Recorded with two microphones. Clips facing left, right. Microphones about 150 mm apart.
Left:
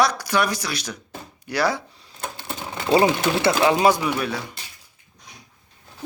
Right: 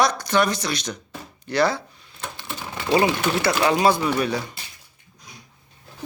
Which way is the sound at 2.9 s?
25° left (ahead or behind).